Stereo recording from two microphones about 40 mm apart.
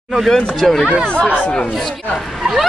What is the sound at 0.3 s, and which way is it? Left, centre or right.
Speech, centre.